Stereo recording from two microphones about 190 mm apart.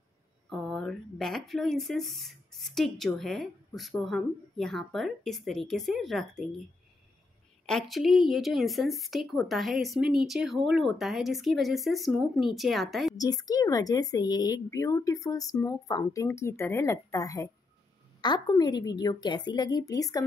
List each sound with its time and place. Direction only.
0.5 s speech: centre (ahead or behind)
7.6 s speech: centre (ahead or behind)
13.2 s speech: 20° left (ahead or behind)